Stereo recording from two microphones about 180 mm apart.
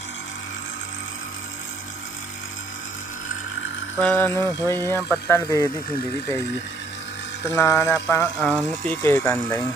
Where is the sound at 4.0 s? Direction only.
5° left (ahead or behind).